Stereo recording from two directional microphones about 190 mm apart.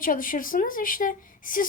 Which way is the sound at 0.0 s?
45° left (ahead or behind).